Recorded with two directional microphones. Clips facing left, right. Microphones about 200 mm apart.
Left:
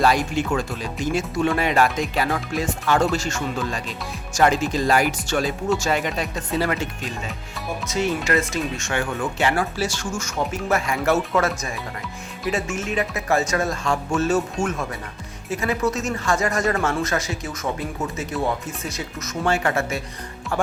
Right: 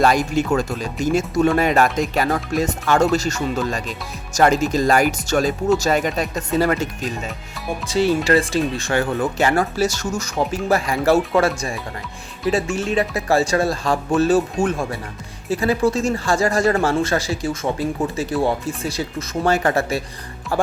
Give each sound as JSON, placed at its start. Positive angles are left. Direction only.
{"t": 0.0, "sound": "speech", "side_deg": -45}
{"t": 7.9, "sound": "speech", "side_deg": -35}